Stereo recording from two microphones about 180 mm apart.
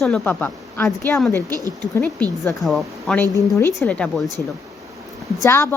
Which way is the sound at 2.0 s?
10° left (ahead or behind).